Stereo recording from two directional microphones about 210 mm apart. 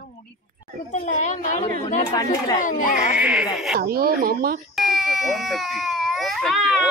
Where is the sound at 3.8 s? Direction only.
45° right (ahead or behind).